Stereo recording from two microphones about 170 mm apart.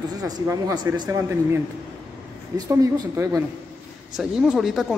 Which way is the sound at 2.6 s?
20° right (ahead or behind).